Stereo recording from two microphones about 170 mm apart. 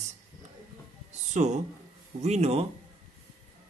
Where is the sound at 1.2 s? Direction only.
45° right (ahead or behind).